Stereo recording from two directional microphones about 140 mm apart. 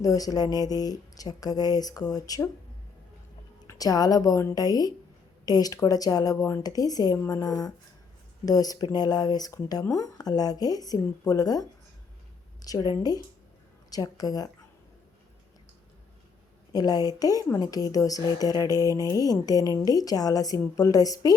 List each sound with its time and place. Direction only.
0.0 s speech: 25° left (ahead or behind)
3.7 s speech: 25° left (ahead or behind)
12.6 s speech: 25° left (ahead or behind)
16.7 s speech: 25° left (ahead or behind)